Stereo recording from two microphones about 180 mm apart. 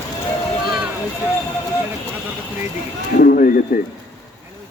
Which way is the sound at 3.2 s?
50° left (ahead or behind).